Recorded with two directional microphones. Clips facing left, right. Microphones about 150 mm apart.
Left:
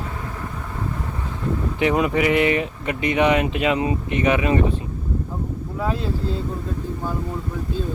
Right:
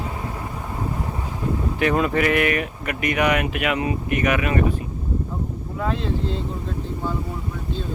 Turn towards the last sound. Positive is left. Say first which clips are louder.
# even
turn(degrees=5)  # may be behind; listen again after turning